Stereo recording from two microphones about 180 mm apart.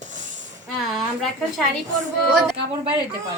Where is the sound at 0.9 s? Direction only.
Centre (ahead or behind).